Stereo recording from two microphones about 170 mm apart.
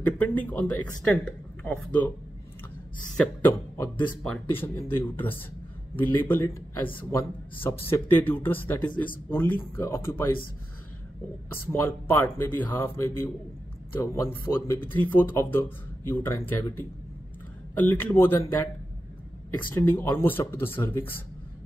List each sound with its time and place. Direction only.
0.0 s a man's voice: 10° left (ahead or behind)
3.2 s a man's voice: 15° left (ahead or behind)
11.5 s a man's voice: 15° left (ahead or behind)
19.7 s a man's voice: 10° left (ahead or behind)